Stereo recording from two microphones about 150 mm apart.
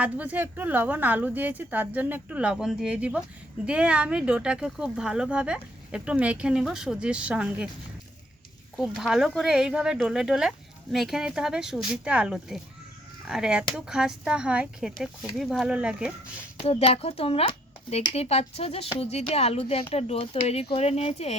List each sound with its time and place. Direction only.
0.0 s speech: 10° right (ahead or behind)
8.8 s speech: centre (ahead or behind)
16.6 s speech: 40° left (ahead or behind)